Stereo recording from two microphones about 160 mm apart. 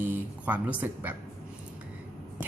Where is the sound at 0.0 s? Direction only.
10° right (ahead or behind).